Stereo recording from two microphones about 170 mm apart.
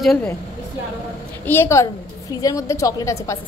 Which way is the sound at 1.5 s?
15° left (ahead or behind).